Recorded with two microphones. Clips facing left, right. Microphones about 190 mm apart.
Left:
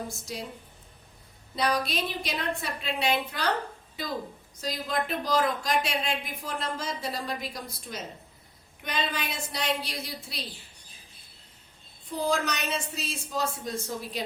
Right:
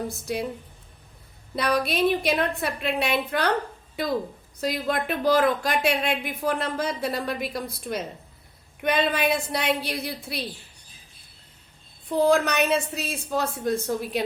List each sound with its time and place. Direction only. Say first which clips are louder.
0.3 s speech: right 10 dB; 60° right (ahead or behind)
1.5 s speech: right 4 dB; 60° right (ahead or behind)
4.6 s speech: right 5 dB; 60° right (ahead or behind)
12.0 s speech: right 8 dB; 60° right (ahead or behind)